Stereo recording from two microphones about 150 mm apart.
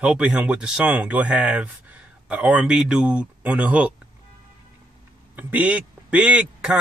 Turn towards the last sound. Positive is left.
turn(degrees=-5)  # may be behind; listen again after turning